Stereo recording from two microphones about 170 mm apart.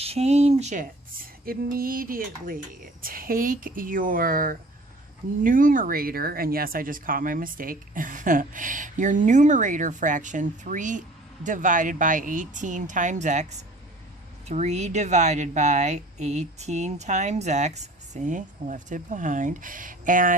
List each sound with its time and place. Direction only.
0.0 s speech: 35° right (ahead or behind)
1.5 s speech: 60° right (ahead or behind)